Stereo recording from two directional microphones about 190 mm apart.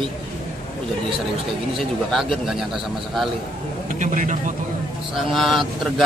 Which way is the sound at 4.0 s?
40° right (ahead or behind).